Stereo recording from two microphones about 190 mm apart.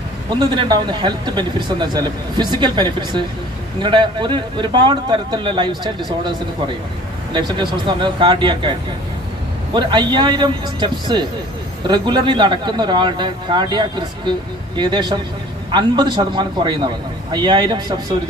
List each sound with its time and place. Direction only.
0.3 s speech: 25° right (ahead or behind)
7.3 s speech: 25° right (ahead or behind)
9.8 s speech: 25° right (ahead or behind)